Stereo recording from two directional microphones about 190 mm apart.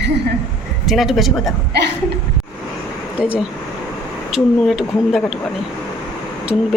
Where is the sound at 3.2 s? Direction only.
5° right (ahead or behind).